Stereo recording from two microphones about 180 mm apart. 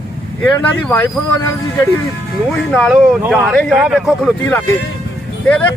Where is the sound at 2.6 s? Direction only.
5° left (ahead or behind).